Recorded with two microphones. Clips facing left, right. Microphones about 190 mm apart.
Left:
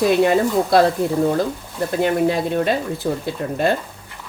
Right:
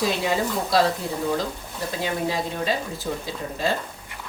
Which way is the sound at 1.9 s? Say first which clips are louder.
Left 8 dB; 55° left (ahead or behind).